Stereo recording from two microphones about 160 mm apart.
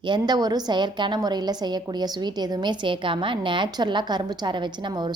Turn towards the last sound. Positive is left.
turn(degrees=-25)  # may be behind; listen again after turning